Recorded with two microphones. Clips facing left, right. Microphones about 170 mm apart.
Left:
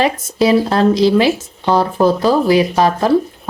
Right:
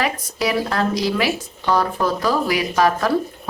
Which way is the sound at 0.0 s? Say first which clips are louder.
Left 8 dB; 25° left (ahead or behind).